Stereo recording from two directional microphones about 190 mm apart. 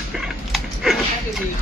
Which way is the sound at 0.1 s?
Centre (ahead or behind).